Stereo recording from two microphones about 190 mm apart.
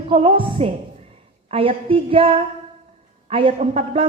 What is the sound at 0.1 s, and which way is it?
A woman's voice, 30° right (ahead or behind).